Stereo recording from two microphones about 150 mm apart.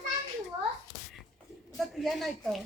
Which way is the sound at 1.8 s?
Centre (ahead or behind).